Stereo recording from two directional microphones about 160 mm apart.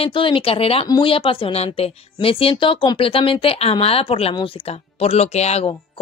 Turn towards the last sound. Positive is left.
turn(degrees=45)  # may be behind; listen again after turning